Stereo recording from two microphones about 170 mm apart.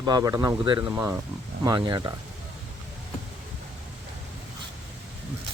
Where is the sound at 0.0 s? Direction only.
25° right (ahead or behind).